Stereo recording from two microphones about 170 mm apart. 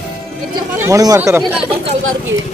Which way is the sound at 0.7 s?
20° right (ahead or behind).